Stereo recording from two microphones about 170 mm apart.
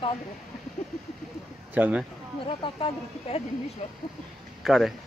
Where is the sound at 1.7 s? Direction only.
10° right (ahead or behind).